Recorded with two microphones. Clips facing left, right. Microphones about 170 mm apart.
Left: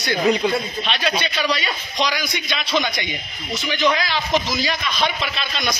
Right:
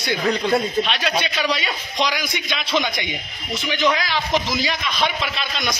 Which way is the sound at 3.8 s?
Centre (ahead or behind).